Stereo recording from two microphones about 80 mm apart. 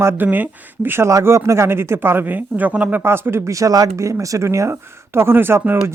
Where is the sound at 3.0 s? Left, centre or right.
Right.